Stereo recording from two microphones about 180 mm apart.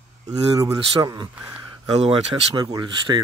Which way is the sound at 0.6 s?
20° right (ahead or behind).